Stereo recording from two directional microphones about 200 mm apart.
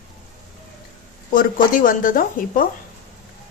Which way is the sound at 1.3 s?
40° left (ahead or behind).